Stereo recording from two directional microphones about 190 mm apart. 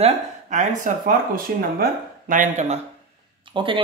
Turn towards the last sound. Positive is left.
turn(degrees=-25)  # may be behind; listen again after turning